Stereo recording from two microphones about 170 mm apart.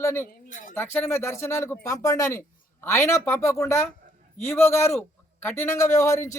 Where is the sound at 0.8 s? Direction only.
15° left (ahead or behind).